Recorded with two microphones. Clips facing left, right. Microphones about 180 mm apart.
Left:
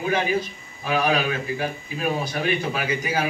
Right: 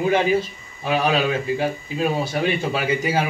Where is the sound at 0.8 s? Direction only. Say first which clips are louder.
Right 2 dB; 30° right (ahead or behind).